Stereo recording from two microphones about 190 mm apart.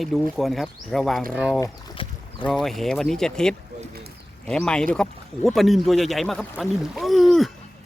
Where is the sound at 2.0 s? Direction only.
30° left (ahead or behind).